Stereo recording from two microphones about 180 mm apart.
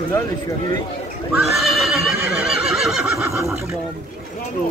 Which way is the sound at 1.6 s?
Centre (ahead or behind).